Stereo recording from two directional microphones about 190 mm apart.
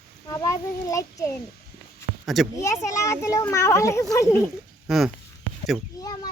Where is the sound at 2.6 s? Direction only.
15° left (ahead or behind).